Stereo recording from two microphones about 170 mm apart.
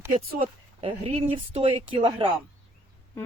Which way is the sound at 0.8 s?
35° right (ahead or behind).